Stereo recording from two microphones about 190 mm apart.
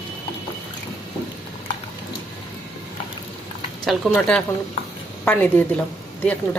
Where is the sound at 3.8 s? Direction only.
5° left (ahead or behind).